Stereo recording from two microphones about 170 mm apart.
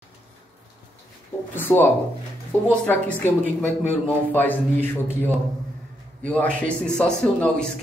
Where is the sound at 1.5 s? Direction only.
10° left (ahead or behind).